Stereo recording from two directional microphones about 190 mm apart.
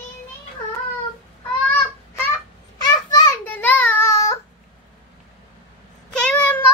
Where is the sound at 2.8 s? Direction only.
20° left (ahead or behind).